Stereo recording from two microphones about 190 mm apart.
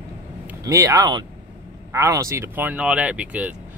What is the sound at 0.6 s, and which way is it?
Speech, 15° right (ahead or behind).